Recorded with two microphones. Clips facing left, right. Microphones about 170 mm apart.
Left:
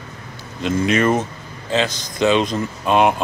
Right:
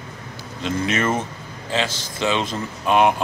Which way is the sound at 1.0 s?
15° left (ahead or behind).